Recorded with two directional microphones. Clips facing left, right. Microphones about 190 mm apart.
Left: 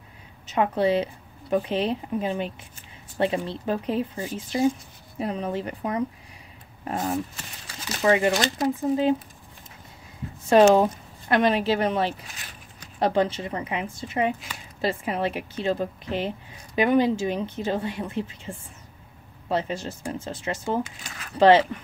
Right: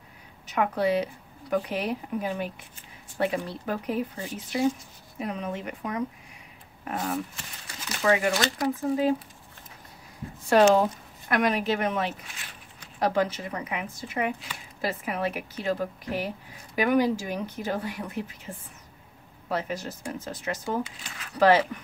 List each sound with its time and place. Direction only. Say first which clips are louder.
0.5 s a woman's voice: left 3 dB; 25° left (ahead or behind)
5.2 s a woman's voice: left 4 dB; 30° left (ahead or behind)
10.4 s a woman's voice: left 3 dB; 20° left (ahead or behind)
20.8 s speech: left 1 dB; 45° left (ahead or behind)
21.4 s a woman's voice: left 4 dB; 25° left (ahead or behind)